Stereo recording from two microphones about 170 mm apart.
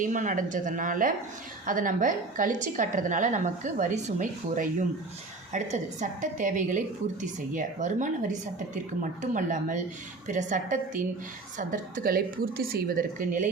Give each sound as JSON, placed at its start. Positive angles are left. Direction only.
{"t": 0.0, "sound": "a woman's voice", "side_deg": -50}